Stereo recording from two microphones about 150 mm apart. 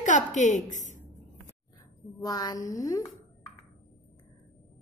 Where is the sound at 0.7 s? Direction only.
55° left (ahead or behind).